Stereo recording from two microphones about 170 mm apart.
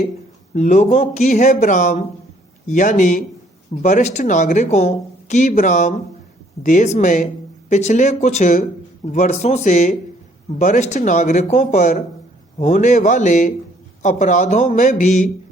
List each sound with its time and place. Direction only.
0.5 s speech: 45° left (ahead or behind)